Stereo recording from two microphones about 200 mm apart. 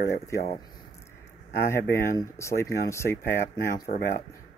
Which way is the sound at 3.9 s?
40° left (ahead or behind).